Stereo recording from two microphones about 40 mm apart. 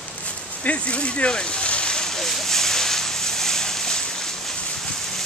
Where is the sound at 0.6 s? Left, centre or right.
Left.